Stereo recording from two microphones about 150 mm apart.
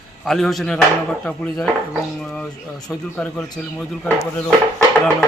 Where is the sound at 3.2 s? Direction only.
5° left (ahead or behind).